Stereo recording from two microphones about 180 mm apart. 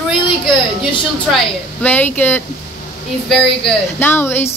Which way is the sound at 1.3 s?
10° left (ahead or behind).